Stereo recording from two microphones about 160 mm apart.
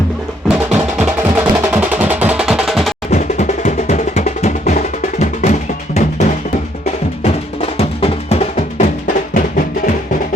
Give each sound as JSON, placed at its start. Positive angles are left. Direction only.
{"t": 0.4, "sound": "music", "side_deg": -5}
{"t": 3.1, "sound": "percussion", "side_deg": 50}
{"t": 5.2, "sound": "music", "side_deg": 40}
{"t": 9.3, "sound": "music", "side_deg": 55}